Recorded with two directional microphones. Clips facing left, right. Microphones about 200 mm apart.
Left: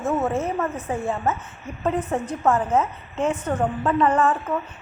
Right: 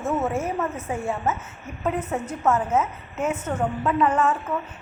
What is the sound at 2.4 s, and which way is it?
A woman's voice, 5° right (ahead or behind).